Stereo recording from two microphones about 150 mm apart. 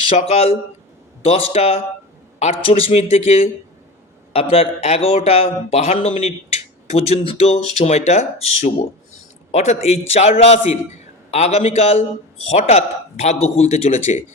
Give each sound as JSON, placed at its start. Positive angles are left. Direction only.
{"t": 0.2, "sound": "a man's voice", "side_deg": 45}